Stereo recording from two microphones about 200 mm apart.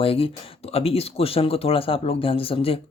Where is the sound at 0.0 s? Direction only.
30° left (ahead or behind).